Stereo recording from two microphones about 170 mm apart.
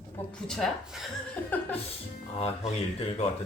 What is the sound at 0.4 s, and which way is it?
Speech, centre (ahead or behind).